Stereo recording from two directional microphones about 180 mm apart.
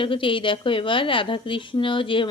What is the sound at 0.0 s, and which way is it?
A woman's voice, 30° left (ahead or behind).